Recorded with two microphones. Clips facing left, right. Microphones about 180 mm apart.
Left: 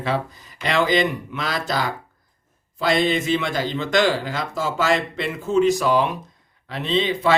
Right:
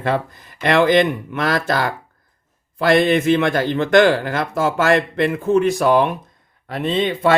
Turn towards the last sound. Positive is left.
turn(degrees=-55)  # may be behind; listen again after turning